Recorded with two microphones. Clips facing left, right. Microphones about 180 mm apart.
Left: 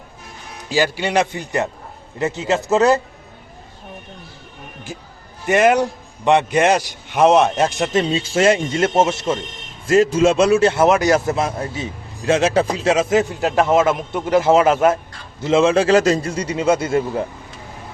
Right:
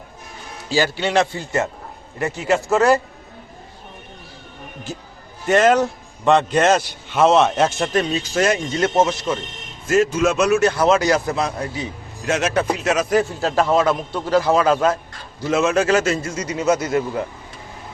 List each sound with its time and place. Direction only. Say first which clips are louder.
0.7 s a man's voice: left 1 dB; 15° left (ahead or behind)
5.5 s a man's voice: even; 10° left (ahead or behind)
8.0 s a man's voice: left 3 dB; 25° left (ahead or behind)